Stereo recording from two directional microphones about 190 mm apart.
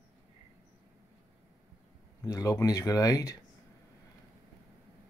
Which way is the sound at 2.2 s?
15° left (ahead or behind).